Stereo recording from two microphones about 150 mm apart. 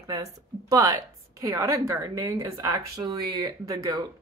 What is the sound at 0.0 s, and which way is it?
Speech, 20° right (ahead or behind).